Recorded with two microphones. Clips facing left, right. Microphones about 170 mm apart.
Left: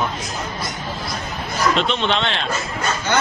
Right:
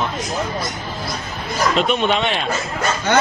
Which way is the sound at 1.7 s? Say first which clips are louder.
Right 4 dB; 10° right (ahead or behind).